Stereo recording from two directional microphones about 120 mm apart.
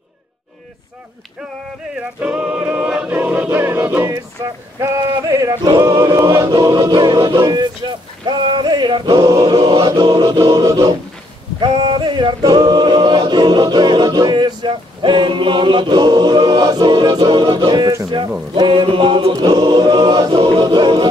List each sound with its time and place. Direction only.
2.1 s choir: 10° right (ahead or behind)
4.7 s male singing: 25° right (ahead or behind)
5.7 s a capella: 30° right (ahead or behind)